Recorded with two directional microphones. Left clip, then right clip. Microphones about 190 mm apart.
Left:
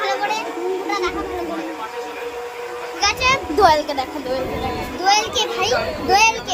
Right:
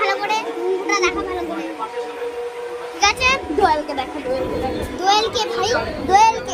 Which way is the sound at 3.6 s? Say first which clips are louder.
Left 5 dB; 50° left (ahead or behind).